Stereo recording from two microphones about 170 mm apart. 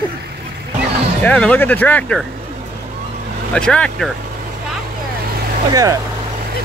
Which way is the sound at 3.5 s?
5° left (ahead or behind).